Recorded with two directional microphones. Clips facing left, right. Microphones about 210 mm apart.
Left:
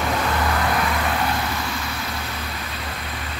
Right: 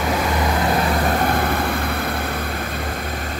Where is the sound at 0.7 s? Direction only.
40° right (ahead or behind); by 1.9 s 55° right (ahead or behind).